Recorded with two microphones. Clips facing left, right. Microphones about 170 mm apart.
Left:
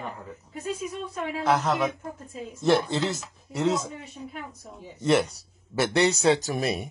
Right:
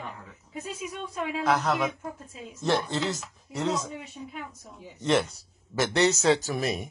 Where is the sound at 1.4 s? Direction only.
5° left (ahead or behind).